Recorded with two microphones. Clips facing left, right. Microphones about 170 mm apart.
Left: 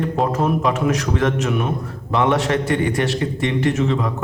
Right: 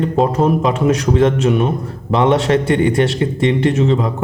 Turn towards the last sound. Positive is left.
turn(degrees=-25)  # may be behind; listen again after turning